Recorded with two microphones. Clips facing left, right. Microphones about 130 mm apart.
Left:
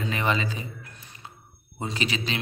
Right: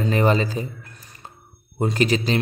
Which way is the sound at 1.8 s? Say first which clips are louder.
Right 9 dB; 45° right (ahead or behind).